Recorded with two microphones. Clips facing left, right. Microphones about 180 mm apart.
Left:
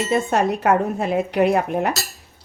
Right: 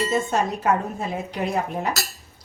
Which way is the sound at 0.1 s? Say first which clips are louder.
Left 4 dB; 65° left (ahead or behind).